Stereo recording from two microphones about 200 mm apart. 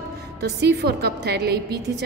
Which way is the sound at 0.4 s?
50° right (ahead or behind).